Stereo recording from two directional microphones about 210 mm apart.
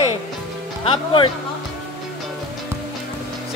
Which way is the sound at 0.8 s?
25° left (ahead or behind).